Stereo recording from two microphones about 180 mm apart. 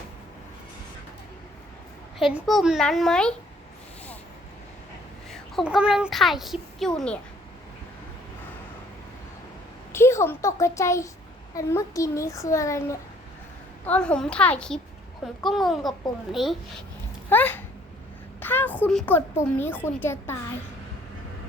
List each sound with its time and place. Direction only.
2.1 s a child's voice: centre (ahead or behind)
5.3 s a child's voice: centre (ahead or behind)
9.9 s a child's voice: 15° left (ahead or behind)
13.8 s a child's voice: 5° left (ahead or behind)
17.2 s a sound: 10° left (ahead or behind)
18.3 s a child's voice: 10° left (ahead or behind)